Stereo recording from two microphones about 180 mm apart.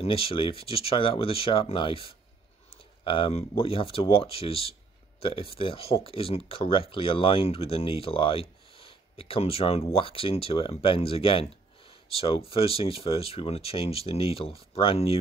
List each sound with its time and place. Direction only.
0.0 s speech: 30° left (ahead or behind)